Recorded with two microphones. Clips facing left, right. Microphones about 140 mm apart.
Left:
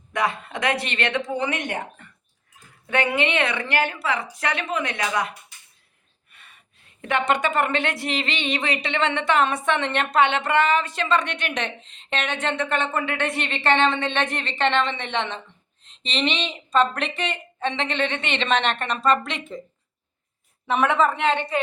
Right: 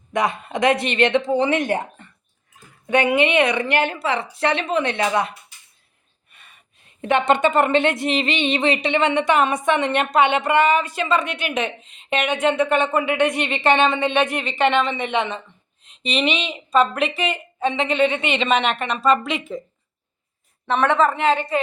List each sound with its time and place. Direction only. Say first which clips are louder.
0.1 s a woman's voice: right 3 dB; 20° right (ahead or behind)
2.8 s a woman's voice: right 5 dB; 15° right (ahead or behind)
6.3 s a woman's voice: right 1 dB; 20° right (ahead or behind)
20.7 s a woman's voice: right 2 dB; 5° left (ahead or behind)